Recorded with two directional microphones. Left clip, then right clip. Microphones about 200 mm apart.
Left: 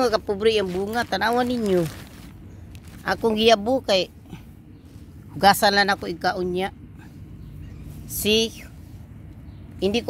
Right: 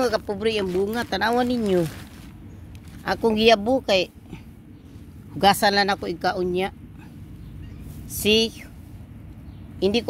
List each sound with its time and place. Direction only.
0.0 s speech: 30° left (ahead or behind)
1.1 s speech: 5° left (ahead or behind)
3.0 s speech: 5° left (ahead or behind)
5.4 s speech: 10° left (ahead or behind)
8.2 s speech: 5° left (ahead or behind)
9.8 s speech: 5° left (ahead or behind)